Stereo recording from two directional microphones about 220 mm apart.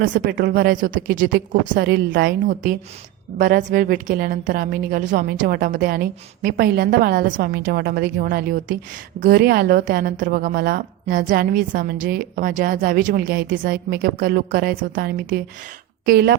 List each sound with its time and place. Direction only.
0.0 s a woman's voice: 40° right (ahead or behind)